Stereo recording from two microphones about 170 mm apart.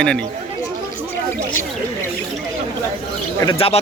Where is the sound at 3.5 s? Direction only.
35° left (ahead or behind).